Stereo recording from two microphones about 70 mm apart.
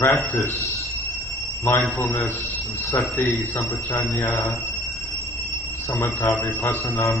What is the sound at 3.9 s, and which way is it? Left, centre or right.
Speech, left.